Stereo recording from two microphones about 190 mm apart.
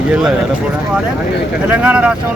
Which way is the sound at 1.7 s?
5° right (ahead or behind).